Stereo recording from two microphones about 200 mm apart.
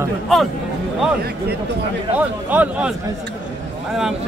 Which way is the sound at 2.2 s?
10° right (ahead or behind).